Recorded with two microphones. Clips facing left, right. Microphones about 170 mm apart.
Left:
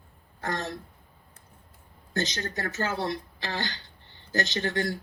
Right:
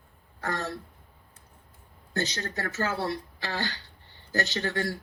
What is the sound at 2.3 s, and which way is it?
Speech, 35° right (ahead or behind).